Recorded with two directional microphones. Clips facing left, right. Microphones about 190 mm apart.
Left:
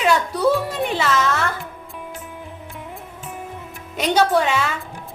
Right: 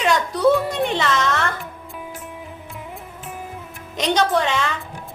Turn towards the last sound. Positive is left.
turn(degrees=5)  # may be behind; listen again after turning